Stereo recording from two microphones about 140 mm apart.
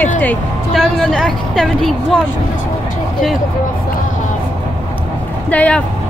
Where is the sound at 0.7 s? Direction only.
5° left (ahead or behind).